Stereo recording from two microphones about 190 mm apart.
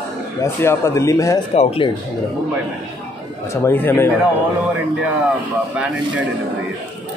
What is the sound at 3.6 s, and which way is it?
Speech, 10° left (ahead or behind).